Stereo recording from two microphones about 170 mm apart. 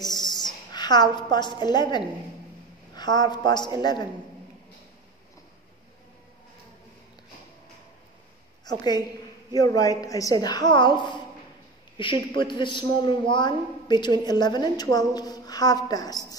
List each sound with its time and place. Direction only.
0.0 s a sound: 25° left (ahead or behind)
0.7 s a woman's voice: 25° left (ahead or behind)
8.6 s a woman's voice: 25° left (ahead or behind)